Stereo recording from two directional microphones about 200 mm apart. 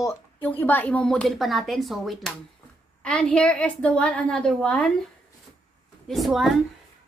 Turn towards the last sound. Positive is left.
turn(degrees=0)  # may be behind; listen again after turning